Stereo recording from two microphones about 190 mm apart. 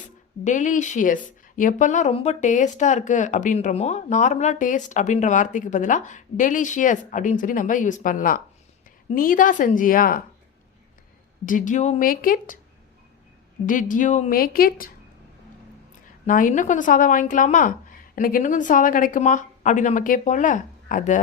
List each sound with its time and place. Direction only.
0.4 s a woman's voice: 40° left (ahead or behind)
11.4 s a woman's voice: 45° left (ahead or behind)
13.7 s a woman's voice: 45° left (ahead or behind)
16.2 s a woman's voice: 45° left (ahead or behind)